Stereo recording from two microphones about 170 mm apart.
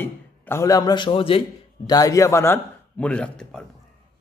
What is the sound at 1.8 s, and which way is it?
A man's voice, 20° left (ahead or behind).